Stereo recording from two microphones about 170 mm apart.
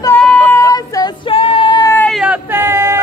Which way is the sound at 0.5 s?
20° left (ahead or behind).